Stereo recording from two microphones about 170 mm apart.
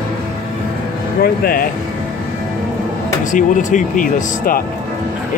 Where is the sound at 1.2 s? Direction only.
60° left (ahead or behind).